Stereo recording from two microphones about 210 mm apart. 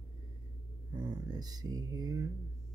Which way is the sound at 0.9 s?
20° right (ahead or behind).